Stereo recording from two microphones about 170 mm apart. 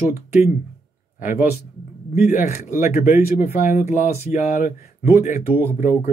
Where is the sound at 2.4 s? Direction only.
45° left (ahead or behind).